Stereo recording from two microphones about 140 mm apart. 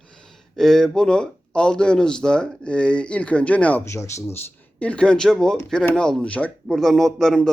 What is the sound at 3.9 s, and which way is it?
Speech, 20° left (ahead or behind).